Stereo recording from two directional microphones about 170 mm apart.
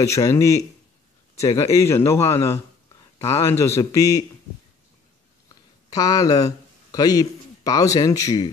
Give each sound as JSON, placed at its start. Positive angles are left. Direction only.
{"t": 0.0, "sound": "a man's voice", "side_deg": 20}
{"t": 5.9, "sound": "speech", "side_deg": 20}